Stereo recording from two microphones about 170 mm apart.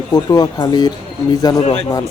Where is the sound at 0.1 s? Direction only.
25° left (ahead or behind).